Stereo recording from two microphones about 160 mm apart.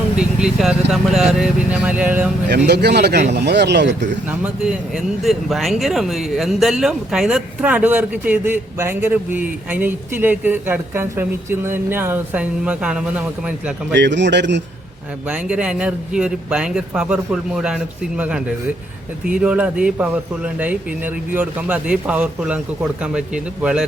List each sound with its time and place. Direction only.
0.2 s speech: 5° right (ahead or behind)
2.6 s speech: 90° right
4.3 s speech: 10° right (ahead or behind)
13.9 s speech: 90° right
15.3 s speech: 5° right (ahead or behind)